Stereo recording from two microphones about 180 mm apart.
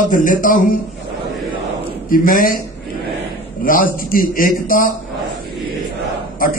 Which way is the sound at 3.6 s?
50° left (ahead or behind).